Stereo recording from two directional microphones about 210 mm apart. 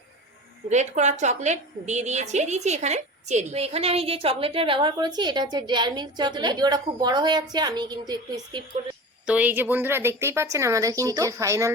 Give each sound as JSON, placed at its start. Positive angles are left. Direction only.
{"t": 0.7, "sound": "a woman's voice", "side_deg": -35}
{"t": 9.2, "sound": "a woman's voice", "side_deg": -5}